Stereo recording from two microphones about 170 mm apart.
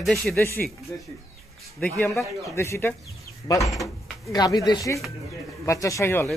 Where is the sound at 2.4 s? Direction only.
15° left (ahead or behind).